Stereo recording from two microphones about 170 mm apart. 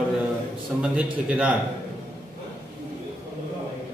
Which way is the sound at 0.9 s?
5° right (ahead or behind).